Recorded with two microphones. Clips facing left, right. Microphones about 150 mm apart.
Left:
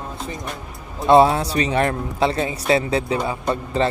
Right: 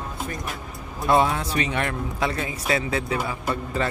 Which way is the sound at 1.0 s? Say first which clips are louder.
Left 7 dB; 30° left (ahead or behind).